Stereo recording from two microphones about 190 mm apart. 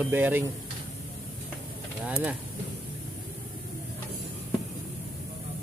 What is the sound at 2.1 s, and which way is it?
Speech, 5° right (ahead or behind).